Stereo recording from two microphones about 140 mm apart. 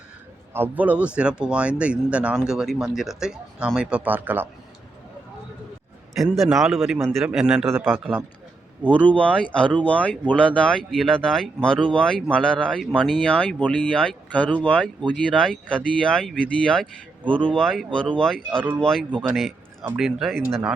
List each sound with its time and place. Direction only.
0.5 s speech: 15° right (ahead or behind)
6.3 s a man's voice: centre (ahead or behind)
7.7 s speech: 15° right (ahead or behind)
9.0 s a man's voice: 10° left (ahead or behind)